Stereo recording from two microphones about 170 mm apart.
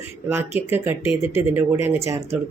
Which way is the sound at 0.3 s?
15° right (ahead or behind).